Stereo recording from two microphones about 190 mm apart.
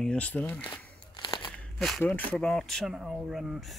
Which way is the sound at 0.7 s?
25° left (ahead or behind).